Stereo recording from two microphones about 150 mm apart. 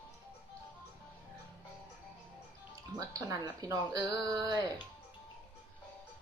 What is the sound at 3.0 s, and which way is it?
A woman's voice, 20° right (ahead or behind).